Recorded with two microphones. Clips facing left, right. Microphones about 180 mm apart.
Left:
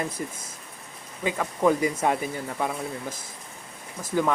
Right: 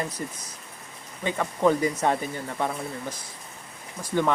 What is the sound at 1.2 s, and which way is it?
Speech, 5° left (ahead or behind).